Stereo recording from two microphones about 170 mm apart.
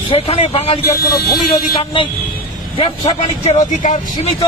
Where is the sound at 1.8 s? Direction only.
30° left (ahead or behind).